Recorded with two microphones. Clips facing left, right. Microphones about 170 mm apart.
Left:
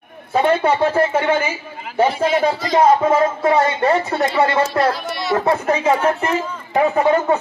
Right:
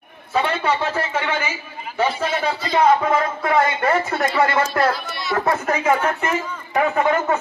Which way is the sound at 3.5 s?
30° left (ahead or behind).